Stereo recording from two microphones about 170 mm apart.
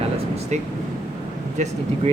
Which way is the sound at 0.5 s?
45° right (ahead or behind).